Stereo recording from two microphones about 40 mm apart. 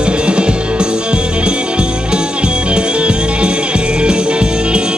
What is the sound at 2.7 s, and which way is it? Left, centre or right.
Music, right.